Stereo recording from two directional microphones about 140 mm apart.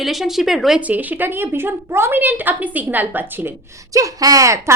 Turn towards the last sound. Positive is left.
turn(degrees=-20)  # may be behind; listen again after turning